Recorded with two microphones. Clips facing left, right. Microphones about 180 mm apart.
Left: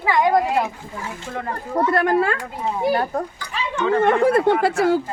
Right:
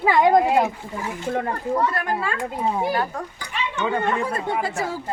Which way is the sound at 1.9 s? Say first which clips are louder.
Left 7 dB; 60° left (ahead or behind).